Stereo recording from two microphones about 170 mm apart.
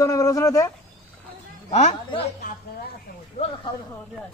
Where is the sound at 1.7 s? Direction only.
40° left (ahead or behind).